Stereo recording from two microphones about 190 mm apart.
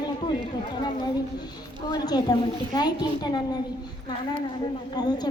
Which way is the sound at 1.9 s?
20° left (ahead or behind).